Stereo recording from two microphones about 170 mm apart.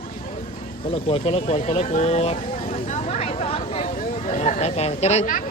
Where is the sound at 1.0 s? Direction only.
35° left (ahead or behind).